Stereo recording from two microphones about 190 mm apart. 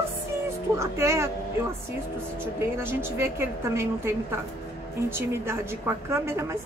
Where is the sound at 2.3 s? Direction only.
10° right (ahead or behind).